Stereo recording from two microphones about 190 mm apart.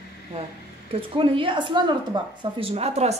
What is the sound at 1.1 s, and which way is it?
A woman's voice, 25° right (ahead or behind).